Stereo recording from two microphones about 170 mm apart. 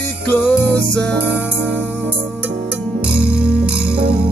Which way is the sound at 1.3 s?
10° right (ahead or behind).